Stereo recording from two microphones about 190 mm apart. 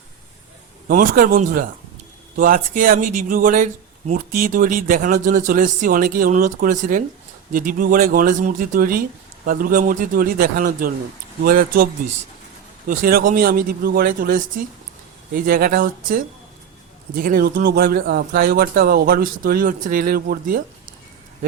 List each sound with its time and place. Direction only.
0.9 s speech: 45° right (ahead or behind)
12.9 s speech: 50° right (ahead or behind)